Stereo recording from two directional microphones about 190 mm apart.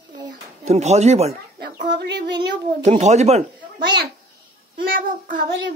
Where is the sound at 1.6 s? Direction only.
65° right (ahead or behind).